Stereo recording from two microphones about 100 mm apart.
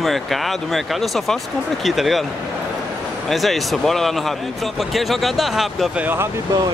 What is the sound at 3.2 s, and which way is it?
Speech, centre (ahead or behind).